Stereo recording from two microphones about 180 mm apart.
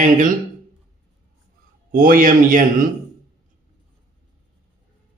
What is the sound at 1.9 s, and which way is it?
Speech, 50° right (ahead or behind).